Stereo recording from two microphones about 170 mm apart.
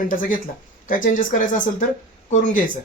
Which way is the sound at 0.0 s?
55° left (ahead or behind).